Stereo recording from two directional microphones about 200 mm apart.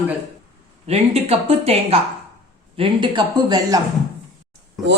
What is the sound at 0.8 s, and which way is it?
Speech, 30° right (ahead or behind).